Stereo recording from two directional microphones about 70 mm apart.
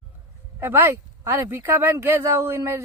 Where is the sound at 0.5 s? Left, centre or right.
Right.